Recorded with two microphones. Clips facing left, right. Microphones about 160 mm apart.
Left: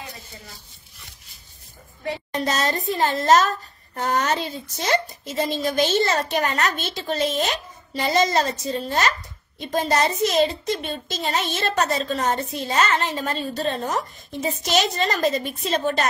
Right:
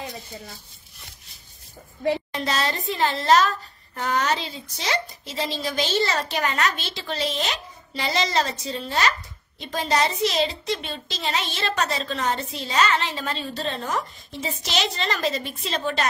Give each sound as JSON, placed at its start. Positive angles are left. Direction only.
{"t": 2.3, "sound": "speech", "side_deg": 45}